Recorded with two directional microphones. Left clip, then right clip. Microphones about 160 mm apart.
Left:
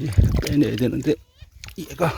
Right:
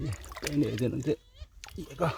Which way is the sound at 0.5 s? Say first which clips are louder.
Left 9 dB; 70° left (ahead or behind).